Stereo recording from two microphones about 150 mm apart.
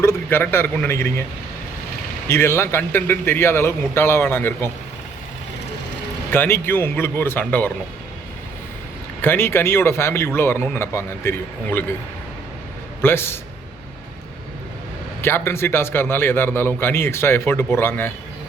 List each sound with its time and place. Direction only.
0.0 s a man's voice: 15° left (ahead or behind)
2.2 s a man's voice: 15° left (ahead or behind)
6.3 s a man's voice: 15° left (ahead or behind)
9.2 s a man's voice: 15° left (ahead or behind)
13.0 s a man's voice: 15° left (ahead or behind)
15.2 s a man's voice: 15° left (ahead or behind)